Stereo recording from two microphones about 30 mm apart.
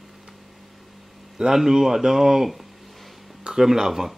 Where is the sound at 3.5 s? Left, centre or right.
Centre.